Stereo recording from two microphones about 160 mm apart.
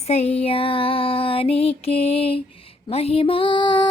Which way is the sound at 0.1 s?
40° left (ahead or behind).